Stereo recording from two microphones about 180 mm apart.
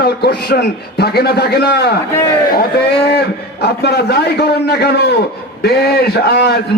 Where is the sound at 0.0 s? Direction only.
60° left (ahead or behind).